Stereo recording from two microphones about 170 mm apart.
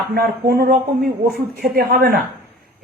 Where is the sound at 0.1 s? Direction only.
65° right (ahead or behind).